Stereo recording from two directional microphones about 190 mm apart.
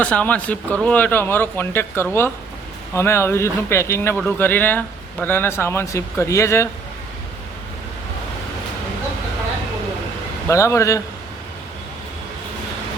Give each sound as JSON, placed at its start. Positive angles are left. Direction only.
{"t": 0.0, "sound": "speech", "side_deg": 5}
{"t": 10.5, "sound": "speech", "side_deg": 15}